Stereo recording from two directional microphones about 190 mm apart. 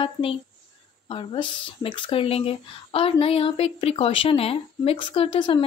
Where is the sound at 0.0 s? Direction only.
30° left (ahead or behind).